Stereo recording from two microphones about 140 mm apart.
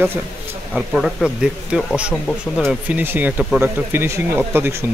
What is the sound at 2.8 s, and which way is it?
Speech, 15° right (ahead or behind).